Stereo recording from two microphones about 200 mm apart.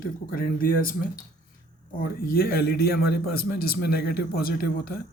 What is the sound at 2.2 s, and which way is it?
Speech, 50° left (ahead or behind).